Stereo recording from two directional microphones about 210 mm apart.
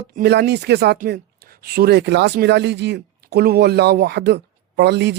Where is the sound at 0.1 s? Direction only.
50° right (ahead or behind).